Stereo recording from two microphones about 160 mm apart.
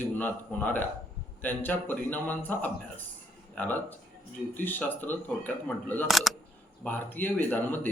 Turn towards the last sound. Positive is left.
turn(degrees=10)  # may be behind; listen again after turning